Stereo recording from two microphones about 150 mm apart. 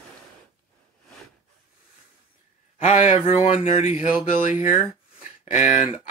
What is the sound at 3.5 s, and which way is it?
Speech, 55° left (ahead or behind).